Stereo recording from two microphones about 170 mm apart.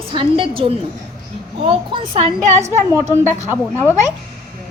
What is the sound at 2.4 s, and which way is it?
Speech, 40° right (ahead or behind).